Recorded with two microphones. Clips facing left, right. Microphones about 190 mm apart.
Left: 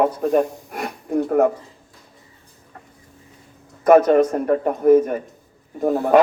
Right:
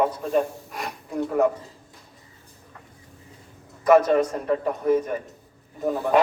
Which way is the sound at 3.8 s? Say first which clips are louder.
Left 4 dB; 55° left (ahead or behind).